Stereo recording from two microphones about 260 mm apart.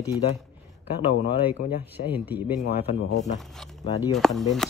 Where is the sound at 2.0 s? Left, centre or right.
Centre.